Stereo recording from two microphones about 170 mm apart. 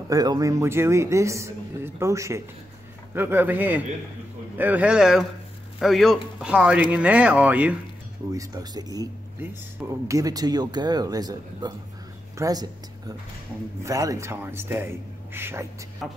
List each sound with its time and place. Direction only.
0.1 s speech: 20° right (ahead or behind)
8.3 s speech: 20° right (ahead or behind)
13.8 s speech: 20° right (ahead or behind)
16.0 s speech: centre (ahead or behind)